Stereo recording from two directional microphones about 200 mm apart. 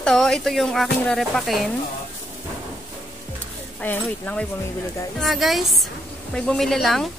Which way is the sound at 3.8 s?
5° left (ahead or behind).